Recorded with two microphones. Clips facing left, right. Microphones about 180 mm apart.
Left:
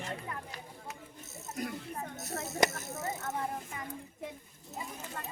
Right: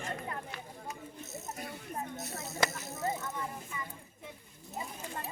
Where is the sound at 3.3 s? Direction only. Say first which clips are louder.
Left 4 dB; 60° left (ahead or behind).